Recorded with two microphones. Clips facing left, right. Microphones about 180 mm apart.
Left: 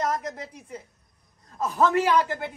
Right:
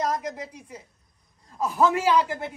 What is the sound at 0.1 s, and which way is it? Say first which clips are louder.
Speech: right 1 dB; centre (ahead or behind).